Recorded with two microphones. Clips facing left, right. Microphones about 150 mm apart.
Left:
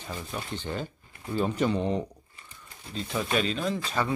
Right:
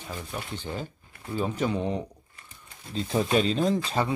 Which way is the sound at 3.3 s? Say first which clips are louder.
Right 4 dB; 30° right (ahead or behind).